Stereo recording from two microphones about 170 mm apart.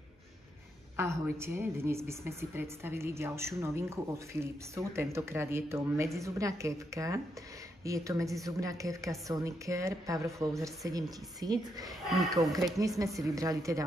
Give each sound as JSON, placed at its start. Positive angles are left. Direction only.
{"t": 0.9, "sound": "a woman's voice", "side_deg": -15}
{"t": 12.1, "sound": "speech", "side_deg": 0}
{"t": 13.2, "sound": "a woman's voice", "side_deg": -20}